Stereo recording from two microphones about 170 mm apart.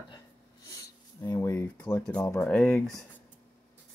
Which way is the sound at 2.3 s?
5° left (ahead or behind).